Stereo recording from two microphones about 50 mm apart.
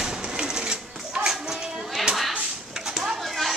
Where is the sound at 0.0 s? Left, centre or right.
Centre.